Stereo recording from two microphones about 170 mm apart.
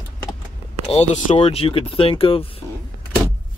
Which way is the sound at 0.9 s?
40° left (ahead or behind).